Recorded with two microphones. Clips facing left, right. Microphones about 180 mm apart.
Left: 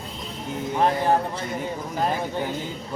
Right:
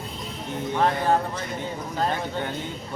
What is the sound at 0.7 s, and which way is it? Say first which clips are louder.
Speech: left 1 dB; 20° left (ahead or behind).